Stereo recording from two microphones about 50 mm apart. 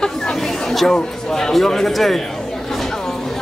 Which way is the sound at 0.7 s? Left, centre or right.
Centre.